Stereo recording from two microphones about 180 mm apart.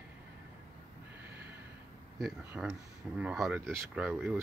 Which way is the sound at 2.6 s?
5° right (ahead or behind).